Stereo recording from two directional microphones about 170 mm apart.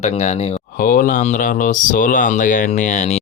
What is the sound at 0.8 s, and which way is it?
Speech, 55° left (ahead or behind).